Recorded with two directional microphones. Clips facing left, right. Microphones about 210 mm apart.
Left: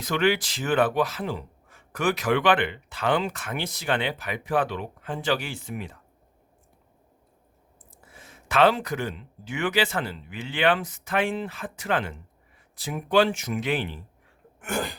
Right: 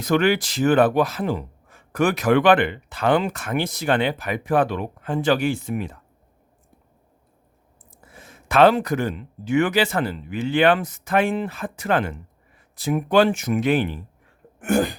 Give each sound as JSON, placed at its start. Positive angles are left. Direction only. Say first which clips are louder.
{"t": 0.0, "sound": "speech", "louder": "right 5 dB", "side_deg": -45}
{"t": 8.2, "sound": "speech", "louder": "right 5 dB", "side_deg": -45}
{"t": 14.6, "sound": "sneeze", "louder": "right 9 dB", "side_deg": -50}